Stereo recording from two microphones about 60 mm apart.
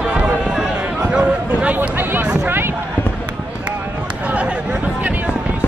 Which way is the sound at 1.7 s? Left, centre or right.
Right.